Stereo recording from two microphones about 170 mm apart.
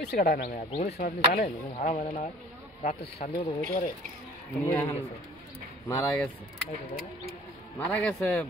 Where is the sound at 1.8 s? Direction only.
40° left (ahead or behind).